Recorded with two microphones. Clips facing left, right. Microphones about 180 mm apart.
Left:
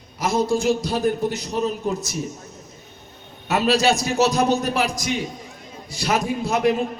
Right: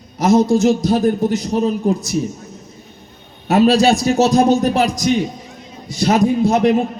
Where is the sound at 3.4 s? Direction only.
35° right (ahead or behind).